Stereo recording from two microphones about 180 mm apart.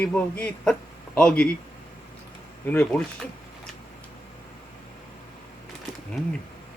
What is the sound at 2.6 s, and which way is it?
Speech, 10° left (ahead or behind).